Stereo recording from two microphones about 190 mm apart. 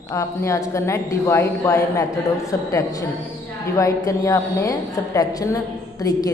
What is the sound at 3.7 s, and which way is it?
A woman's voice, 15° left (ahead or behind).